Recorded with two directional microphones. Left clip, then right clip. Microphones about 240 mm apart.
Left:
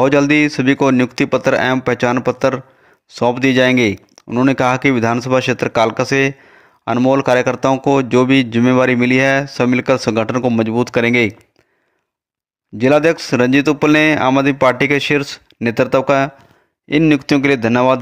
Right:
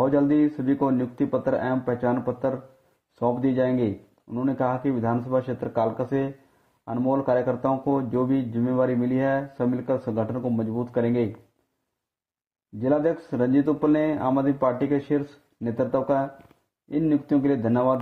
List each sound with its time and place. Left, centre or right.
0.3 s a man's voice: left
12.9 s a man's voice: left